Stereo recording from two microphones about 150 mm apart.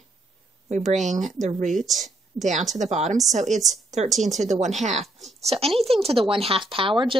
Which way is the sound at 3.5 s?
Centre (ahead or behind).